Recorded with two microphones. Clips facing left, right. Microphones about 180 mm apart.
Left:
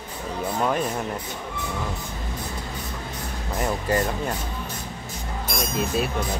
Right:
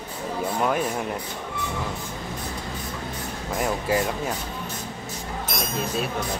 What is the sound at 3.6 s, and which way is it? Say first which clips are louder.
Speech: even; 5° right (ahead or behind).